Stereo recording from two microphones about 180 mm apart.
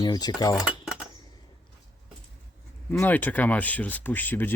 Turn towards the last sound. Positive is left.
turn(degrees=10)  # may be behind; listen again after turning